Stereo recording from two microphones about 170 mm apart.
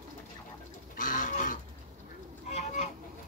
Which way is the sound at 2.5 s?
45° left (ahead or behind).